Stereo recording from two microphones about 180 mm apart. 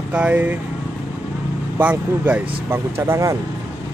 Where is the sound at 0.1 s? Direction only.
10° right (ahead or behind).